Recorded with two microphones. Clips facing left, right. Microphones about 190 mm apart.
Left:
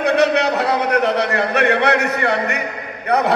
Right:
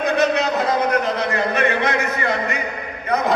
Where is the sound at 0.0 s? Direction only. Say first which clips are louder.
Left 3 dB; 70° left (ahead or behind).